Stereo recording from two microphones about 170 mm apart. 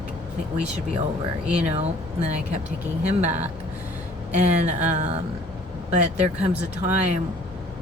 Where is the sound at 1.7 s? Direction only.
40° right (ahead or behind).